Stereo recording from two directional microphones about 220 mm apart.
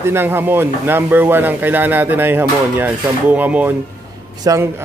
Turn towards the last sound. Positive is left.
turn(degrees=-15)  # may be behind; listen again after turning